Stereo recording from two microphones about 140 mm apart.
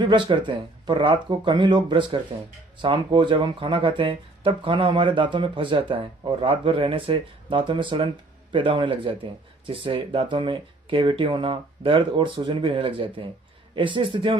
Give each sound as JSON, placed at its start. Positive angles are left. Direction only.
{"t": 0.0, "sound": "speech", "side_deg": -35}